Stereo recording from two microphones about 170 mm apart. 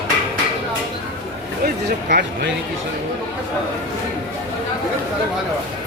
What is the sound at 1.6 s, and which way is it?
Speech, 65° right (ahead or behind).